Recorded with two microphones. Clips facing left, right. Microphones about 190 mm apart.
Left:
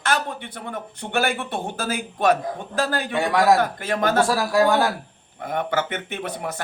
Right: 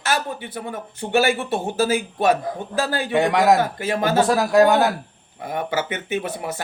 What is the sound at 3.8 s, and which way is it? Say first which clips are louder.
Speech: right 1 dB; 5° right (ahead or behind).